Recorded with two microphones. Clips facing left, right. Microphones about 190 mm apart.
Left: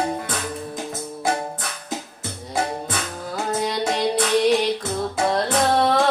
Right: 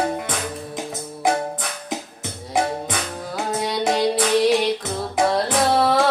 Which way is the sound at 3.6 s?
Centre (ahead or behind).